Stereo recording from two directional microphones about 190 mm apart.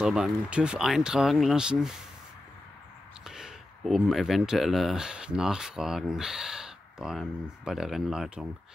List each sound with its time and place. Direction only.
0.0 s speech: 5° right (ahead or behind)
3.3 s speech: centre (ahead or behind)